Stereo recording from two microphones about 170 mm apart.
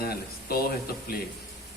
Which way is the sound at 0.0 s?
60° left (ahead or behind).